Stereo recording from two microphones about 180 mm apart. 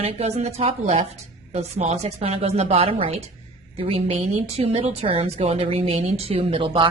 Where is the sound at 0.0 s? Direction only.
35° right (ahead or behind).